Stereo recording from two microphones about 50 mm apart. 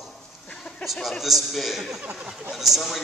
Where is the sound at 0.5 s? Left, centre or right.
Left.